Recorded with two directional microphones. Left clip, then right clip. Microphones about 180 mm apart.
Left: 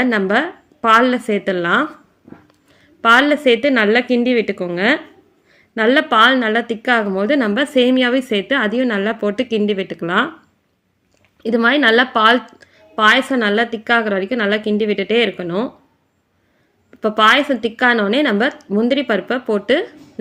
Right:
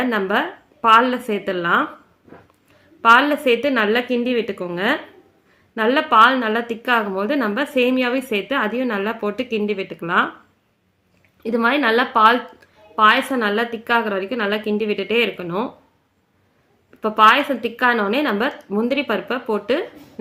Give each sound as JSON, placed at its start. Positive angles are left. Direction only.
{"t": 0.0, "sound": "a woman's voice", "side_deg": 20}
{"t": 3.0, "sound": "a woman's voice", "side_deg": 25}
{"t": 11.4, "sound": "a woman's voice", "side_deg": 20}
{"t": 17.0, "sound": "a woman's voice", "side_deg": 25}